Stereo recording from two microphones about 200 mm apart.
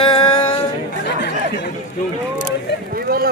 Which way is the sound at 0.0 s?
25° left (ahead or behind).